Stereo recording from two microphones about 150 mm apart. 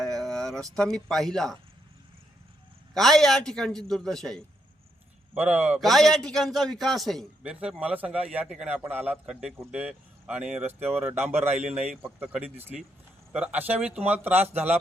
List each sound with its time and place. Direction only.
0.0 s speech: 5° left (ahead or behind)
2.9 s a man's voice: centre (ahead or behind)
5.3 s a man's voice: 10° right (ahead or behind)
11.5 s speech: 50° right (ahead or behind)
12.2 s a man's voice: 10° right (ahead or behind)